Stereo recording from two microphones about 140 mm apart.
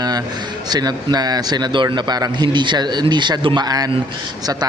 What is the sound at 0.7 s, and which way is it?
A man's voice, 30° right (ahead or behind).